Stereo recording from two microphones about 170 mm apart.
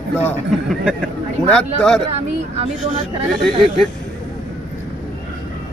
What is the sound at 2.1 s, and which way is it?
Speech, 35° right (ahead or behind).